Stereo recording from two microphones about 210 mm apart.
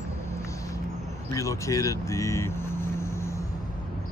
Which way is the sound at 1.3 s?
15° left (ahead or behind).